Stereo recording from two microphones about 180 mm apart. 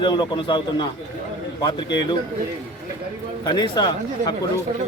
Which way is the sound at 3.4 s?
25° left (ahead or behind).